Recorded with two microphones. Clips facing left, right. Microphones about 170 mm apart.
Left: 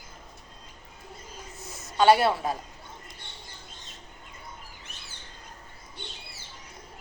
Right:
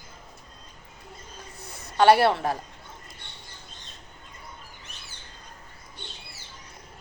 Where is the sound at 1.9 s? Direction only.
65° right (ahead or behind).